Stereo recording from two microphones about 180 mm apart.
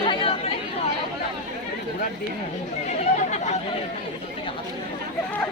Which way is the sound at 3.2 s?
40° left (ahead or behind).